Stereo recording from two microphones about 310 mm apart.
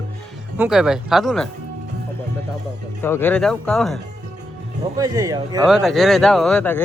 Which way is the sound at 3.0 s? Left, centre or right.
Centre.